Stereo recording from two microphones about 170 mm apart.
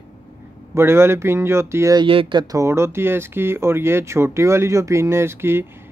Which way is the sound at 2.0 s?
30° right (ahead or behind).